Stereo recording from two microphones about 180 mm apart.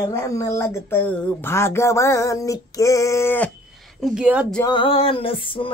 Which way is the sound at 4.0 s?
5° right (ahead or behind).